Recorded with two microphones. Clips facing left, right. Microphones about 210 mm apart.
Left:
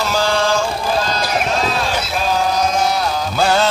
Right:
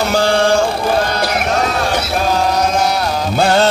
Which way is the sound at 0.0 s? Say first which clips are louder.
Right 4 dB; 60° right (ahead or behind).